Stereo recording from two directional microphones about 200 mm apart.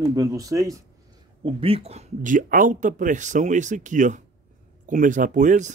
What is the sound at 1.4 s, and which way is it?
Speech, 30° right (ahead or behind).